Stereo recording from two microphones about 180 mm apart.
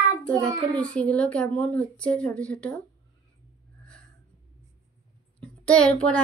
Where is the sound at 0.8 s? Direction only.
5° left (ahead or behind).